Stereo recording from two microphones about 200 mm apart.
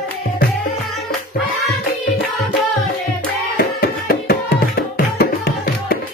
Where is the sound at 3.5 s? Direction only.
50° left (ahead or behind).